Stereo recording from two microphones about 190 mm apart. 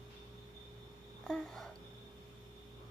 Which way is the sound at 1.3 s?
5° left (ahead or behind).